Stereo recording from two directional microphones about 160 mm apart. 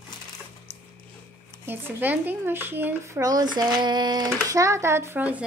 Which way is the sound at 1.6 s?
10° right (ahead or behind).